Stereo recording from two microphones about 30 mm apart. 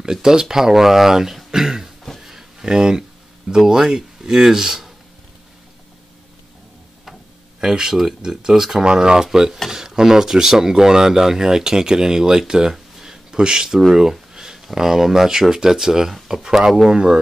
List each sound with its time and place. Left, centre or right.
0.0 s speech: right
2.1 s a sound: centre
2.6 s speech: right
7.6 s speech: centre
8.8 s speech: right
12.7 s a sound: centre
13.7 s speech: centre